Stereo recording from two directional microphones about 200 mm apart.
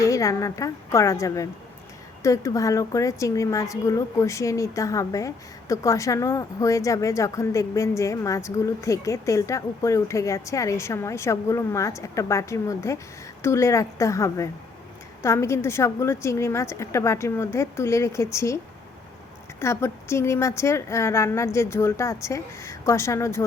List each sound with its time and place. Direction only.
0.0 s a woman's voice: 15° left (ahead or behind)